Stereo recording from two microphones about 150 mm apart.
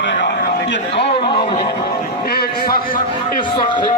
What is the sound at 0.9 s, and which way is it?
Speech, 35° left (ahead or behind).